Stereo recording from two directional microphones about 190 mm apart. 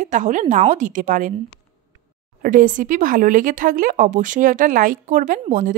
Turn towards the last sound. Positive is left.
turn(degrees=-45)  # may be behind; listen again after turning